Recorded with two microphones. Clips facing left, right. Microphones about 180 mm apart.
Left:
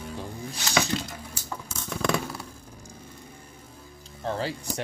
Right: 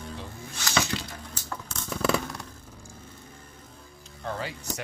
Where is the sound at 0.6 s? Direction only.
10° left (ahead or behind).